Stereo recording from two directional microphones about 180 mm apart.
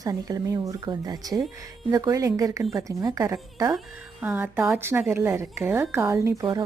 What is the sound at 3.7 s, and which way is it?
Speech, 5° right (ahead or behind).